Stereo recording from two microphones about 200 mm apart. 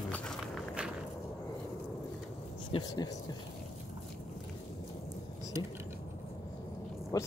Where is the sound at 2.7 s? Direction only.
20° left (ahead or behind).